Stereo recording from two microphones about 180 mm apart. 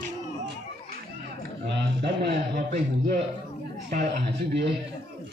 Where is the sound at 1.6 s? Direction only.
75° right (ahead or behind).